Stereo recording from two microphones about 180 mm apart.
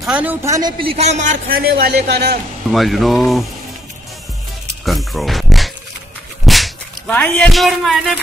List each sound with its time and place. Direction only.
0.0 s a man's voice: 5° right (ahead or behind); by 2.4 s 65° right (ahead or behind)
2.7 s speech: centre (ahead or behind)
4.8 s speech: centre (ahead or behind)